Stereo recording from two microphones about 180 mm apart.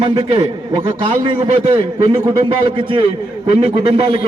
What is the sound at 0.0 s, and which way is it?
A man's voice, 25° right (ahead or behind).